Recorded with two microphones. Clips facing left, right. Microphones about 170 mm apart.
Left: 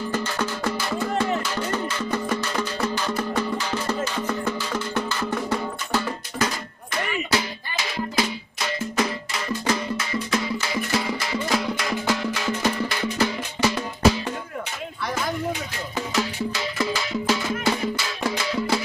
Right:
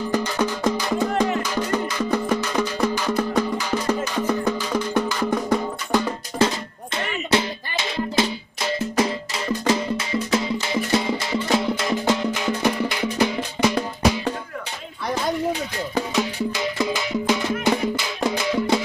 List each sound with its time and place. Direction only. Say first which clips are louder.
0.1 s music: right 6 dB; 15° right (ahead or behind)
6.4 s music: right 6 dB; 30° right (ahead or behind)
16.2 s music: even; 20° right (ahead or behind)